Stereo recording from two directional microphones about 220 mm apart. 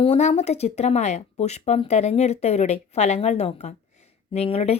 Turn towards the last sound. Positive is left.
turn(degrees=30)  # may be behind; listen again after turning